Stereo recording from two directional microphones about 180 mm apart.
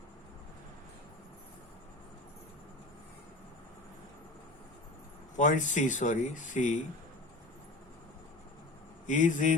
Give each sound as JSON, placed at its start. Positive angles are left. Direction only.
{"t": 5.4, "sound": "speech", "side_deg": 45}
{"t": 9.0, "sound": "speech", "side_deg": 45}